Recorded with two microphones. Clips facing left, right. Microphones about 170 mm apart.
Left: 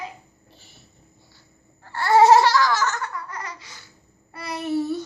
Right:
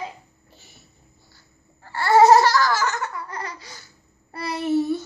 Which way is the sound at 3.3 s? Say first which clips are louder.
Right 2 dB; 30° right (ahead or behind).